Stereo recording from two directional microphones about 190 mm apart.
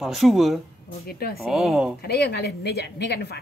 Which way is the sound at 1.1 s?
55° left (ahead or behind).